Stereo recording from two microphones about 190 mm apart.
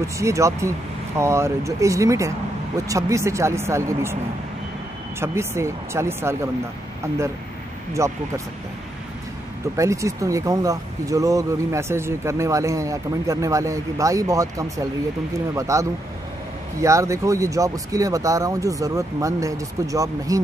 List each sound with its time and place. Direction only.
0.0 s speech: 15° right (ahead or behind)
5.2 s speech: 15° right (ahead or behind)
8.0 s speech: 15° right (ahead or behind)
9.8 s speech: 15° right (ahead or behind)